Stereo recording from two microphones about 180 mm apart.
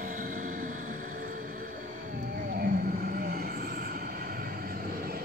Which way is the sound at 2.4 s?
50° right (ahead or behind).